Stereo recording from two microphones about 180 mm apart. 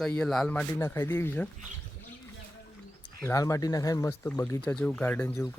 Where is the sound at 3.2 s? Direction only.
20° left (ahead or behind).